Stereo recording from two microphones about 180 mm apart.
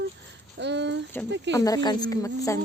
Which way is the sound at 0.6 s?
75° right (ahead or behind).